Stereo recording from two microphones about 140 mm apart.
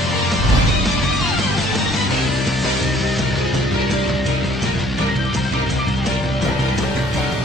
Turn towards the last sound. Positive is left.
turn(degrees=0)  # may be behind; listen again after turning